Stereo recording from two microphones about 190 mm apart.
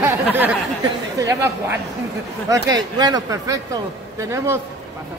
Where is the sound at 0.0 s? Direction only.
10° right (ahead or behind).